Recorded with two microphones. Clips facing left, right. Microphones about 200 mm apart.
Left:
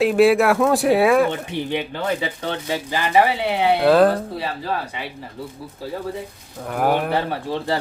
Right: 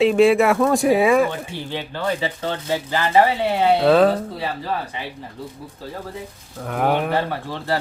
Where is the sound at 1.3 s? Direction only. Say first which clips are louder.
Left 4 dB; 20° left (ahead or behind).